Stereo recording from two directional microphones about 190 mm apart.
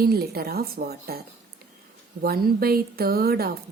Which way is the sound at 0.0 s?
55° right (ahead or behind).